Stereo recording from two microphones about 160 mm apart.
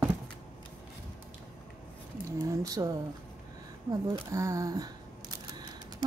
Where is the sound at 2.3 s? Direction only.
20° right (ahead or behind).